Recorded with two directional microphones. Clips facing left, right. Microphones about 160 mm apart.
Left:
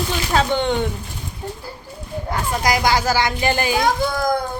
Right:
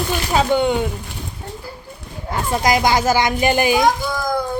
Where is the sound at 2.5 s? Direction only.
20° right (ahead or behind).